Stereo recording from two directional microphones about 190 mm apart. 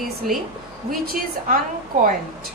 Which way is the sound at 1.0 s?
45° right (ahead or behind).